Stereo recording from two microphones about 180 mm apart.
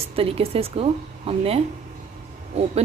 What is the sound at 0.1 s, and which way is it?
A woman's voice, 30° right (ahead or behind).